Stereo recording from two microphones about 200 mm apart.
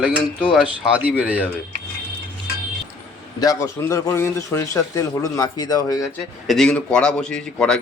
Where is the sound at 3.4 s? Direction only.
15° left (ahead or behind).